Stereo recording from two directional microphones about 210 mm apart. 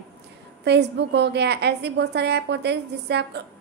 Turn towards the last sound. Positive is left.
turn(degrees=-50)  # may be behind; listen again after turning